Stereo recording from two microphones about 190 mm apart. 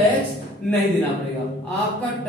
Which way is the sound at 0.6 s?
5° left (ahead or behind).